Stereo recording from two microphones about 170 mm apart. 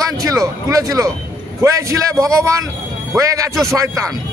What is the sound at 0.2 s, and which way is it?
A man's voice, 20° right (ahead or behind).